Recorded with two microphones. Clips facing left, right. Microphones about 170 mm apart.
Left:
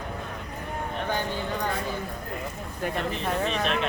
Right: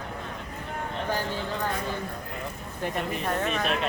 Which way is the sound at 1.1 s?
5° right (ahead or behind).